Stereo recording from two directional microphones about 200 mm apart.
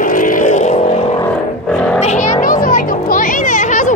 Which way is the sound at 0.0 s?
40° left (ahead or behind).